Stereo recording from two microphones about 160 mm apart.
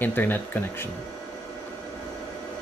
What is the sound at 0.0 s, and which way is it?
Speech, 10° left (ahead or behind).